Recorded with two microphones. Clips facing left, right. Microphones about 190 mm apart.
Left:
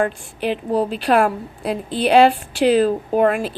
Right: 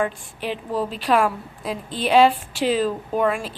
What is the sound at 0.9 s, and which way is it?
A woman's voice, 60° left (ahead or behind).